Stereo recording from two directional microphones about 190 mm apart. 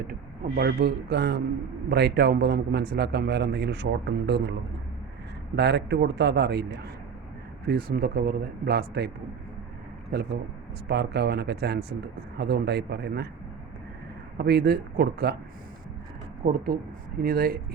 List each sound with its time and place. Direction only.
0.0 s a man's voice: 50° right (ahead or behind)
5.5 s a man's voice: 60° right (ahead or behind)
7.7 s a man's voice: 55° right (ahead or behind)
10.8 s a man's voice: 60° right (ahead or behind)
14.3 s a man's voice: 60° right (ahead or behind)
16.4 s speech: 50° right (ahead or behind)